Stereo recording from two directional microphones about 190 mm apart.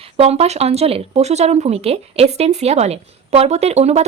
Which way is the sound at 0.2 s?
35° right (ahead or behind).